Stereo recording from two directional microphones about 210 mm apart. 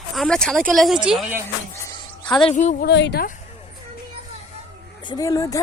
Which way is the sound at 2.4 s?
35° left (ahead or behind).